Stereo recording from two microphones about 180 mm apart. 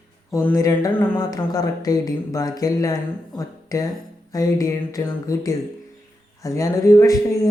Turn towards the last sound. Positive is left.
turn(degrees=15)  # may be behind; listen again after turning